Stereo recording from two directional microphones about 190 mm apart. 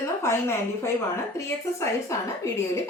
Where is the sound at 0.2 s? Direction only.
15° left (ahead or behind).